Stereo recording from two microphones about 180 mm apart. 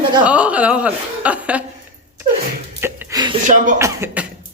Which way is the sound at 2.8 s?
15° right (ahead or behind).